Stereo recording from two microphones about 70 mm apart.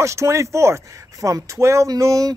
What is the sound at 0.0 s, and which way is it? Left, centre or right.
Speech, right.